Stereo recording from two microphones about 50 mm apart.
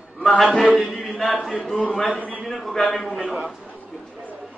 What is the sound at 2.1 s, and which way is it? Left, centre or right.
Speech, left.